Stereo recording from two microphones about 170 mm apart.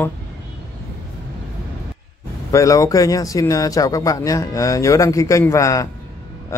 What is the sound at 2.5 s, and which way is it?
Speech, 20° left (ahead or behind).